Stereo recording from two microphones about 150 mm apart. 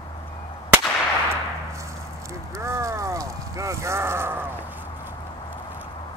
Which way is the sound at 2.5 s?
20° right (ahead or behind).